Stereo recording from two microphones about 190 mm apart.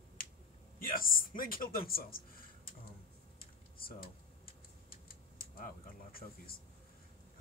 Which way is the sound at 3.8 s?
50° left (ahead or behind).